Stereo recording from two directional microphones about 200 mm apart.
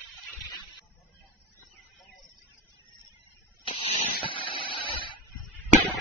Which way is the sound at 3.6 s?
25° left (ahead or behind).